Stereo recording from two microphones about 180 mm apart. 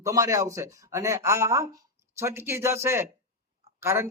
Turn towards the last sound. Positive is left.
turn(degrees=-10)  # may be behind; listen again after turning